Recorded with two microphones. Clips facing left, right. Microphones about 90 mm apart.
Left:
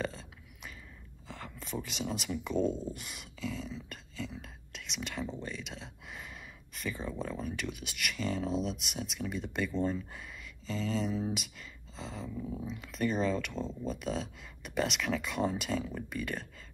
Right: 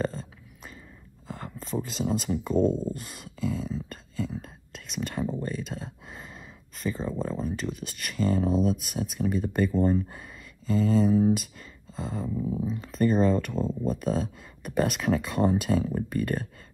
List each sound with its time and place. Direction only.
0.0 s a sound: 40° right (ahead or behind)
1.2 s speech: 40° right (ahead or behind)
12.4 s speech: 15° right (ahead or behind)
12.6 s speech: 40° right (ahead or behind)